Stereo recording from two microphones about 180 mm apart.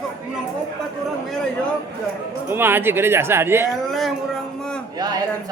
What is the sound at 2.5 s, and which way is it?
A woman's voice, 10° right (ahead or behind).